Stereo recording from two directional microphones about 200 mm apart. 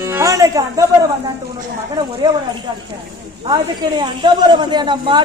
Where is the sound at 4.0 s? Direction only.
20° right (ahead or behind).